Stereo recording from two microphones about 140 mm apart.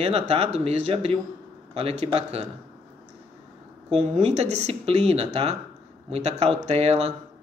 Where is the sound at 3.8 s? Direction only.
50° right (ahead or behind).